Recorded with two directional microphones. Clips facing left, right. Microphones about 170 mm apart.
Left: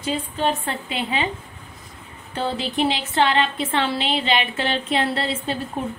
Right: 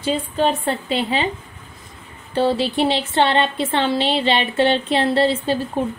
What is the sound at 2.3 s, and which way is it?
A woman's voice, 30° right (ahead or behind).